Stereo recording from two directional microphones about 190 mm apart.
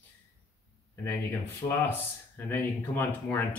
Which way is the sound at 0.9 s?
10° left (ahead or behind).